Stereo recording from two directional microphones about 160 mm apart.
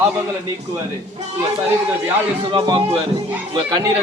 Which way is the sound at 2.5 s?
25° right (ahead or behind).